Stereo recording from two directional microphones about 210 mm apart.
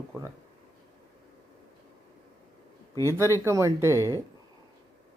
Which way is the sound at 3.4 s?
15° right (ahead or behind).